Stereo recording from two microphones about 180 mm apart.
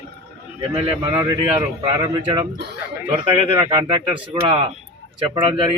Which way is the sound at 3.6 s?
30° right (ahead or behind).